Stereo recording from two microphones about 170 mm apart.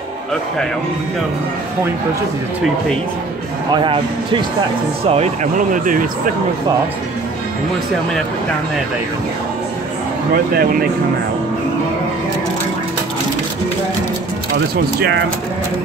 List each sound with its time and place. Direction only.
3.7 s speech: 30° right (ahead or behind); by 6.0 s 50° right (ahead or behind)
10.3 s speech: 60° right (ahead or behind)
14.5 s speech: 70° right (ahead or behind)